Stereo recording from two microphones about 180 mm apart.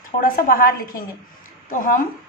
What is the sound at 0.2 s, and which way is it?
A woman's voice, 55° left (ahead or behind).